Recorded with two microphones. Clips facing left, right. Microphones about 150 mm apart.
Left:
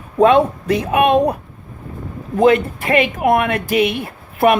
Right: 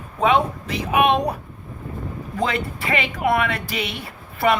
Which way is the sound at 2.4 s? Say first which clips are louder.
Left 12 dB; 50° left (ahead or behind).